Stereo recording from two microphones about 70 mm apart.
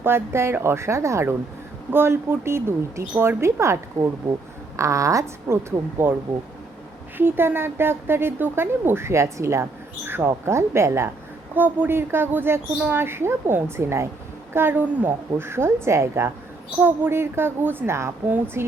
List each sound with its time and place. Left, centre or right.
0.0 s a woman's voice: right
6.0 s speech: right
7.2 s speech: right
11.5 s speech: right